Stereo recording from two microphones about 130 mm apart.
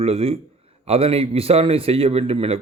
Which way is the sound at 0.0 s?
50° right (ahead or behind).